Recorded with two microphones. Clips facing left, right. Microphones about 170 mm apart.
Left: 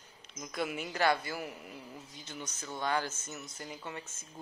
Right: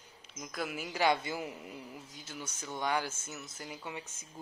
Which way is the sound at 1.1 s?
20° right (ahead or behind).